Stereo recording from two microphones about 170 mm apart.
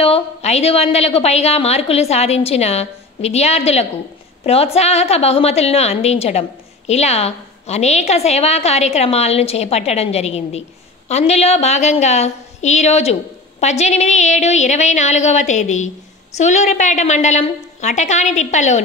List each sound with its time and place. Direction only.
0.0 s a woman's voice: 35° left (ahead or behind)